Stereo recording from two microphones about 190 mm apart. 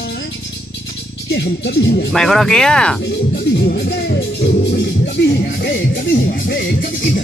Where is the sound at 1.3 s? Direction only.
65° left (ahead or behind).